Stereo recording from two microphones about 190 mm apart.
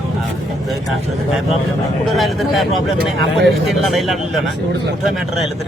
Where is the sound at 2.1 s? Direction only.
Centre (ahead or behind).